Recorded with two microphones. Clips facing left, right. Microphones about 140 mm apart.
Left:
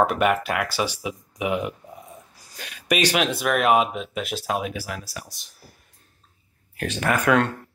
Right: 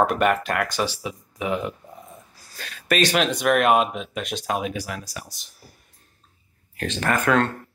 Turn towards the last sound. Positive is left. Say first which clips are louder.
# even
turn(degrees=10)  # may be behind; listen again after turning